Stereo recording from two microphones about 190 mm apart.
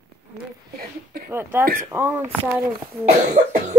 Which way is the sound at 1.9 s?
10° right (ahead or behind).